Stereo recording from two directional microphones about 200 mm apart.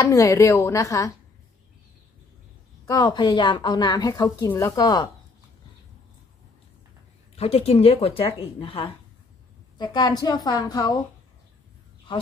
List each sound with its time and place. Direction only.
0.0 s speech: 15° left (ahead or behind)
2.9 s a woman's voice: 20° left (ahead or behind)
7.3 s a woman's voice: 30° left (ahead or behind)